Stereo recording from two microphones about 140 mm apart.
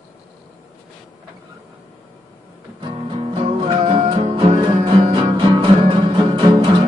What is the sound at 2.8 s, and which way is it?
Music, 35° right (ahead or behind).